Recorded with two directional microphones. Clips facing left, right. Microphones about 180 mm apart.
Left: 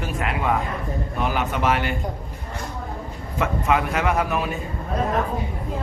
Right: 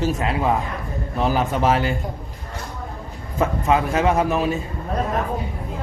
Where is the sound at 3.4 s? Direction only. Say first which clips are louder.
Right 2 dB; 35° right (ahead or behind).